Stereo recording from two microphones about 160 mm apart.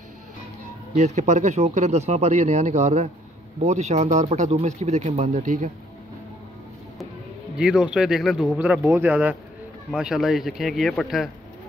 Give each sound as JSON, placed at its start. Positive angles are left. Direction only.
{"t": 0.9, "sound": "speech", "side_deg": -45}
{"t": 7.5, "sound": "speech", "side_deg": -5}